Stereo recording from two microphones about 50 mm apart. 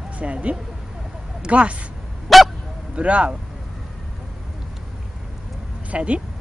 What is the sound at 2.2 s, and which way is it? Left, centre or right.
Dog, centre.